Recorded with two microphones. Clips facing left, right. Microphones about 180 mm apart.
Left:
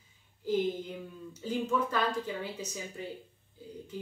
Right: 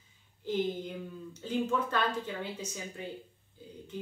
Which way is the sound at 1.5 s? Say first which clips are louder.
Even; 10° left (ahead or behind).